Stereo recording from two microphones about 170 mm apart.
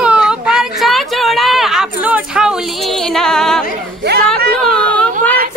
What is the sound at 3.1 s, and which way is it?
Music, 5° left (ahead or behind).